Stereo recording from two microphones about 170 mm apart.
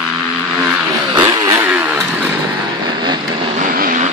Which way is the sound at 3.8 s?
50° right (ahead or behind).